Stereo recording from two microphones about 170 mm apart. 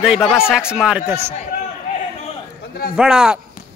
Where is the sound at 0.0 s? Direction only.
5° right (ahead or behind).